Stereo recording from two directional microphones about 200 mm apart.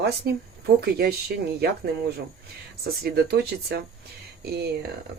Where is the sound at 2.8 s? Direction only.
50° right (ahead or behind).